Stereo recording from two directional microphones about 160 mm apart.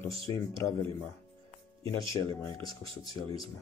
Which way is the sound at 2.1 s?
20° left (ahead or behind).